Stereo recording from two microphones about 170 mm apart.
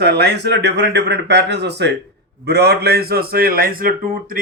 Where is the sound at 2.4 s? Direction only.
70° right (ahead or behind).